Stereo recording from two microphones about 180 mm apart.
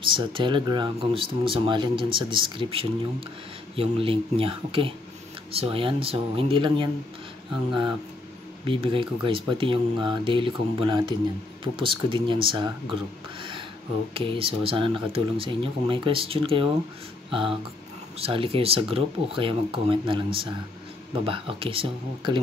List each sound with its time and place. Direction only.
0.0 s speech: 25° right (ahead or behind)
8.6 s speech: 30° right (ahead or behind)
13.4 s a sound: 30° right (ahead or behind)
14.1 s speech: 30° right (ahead or behind)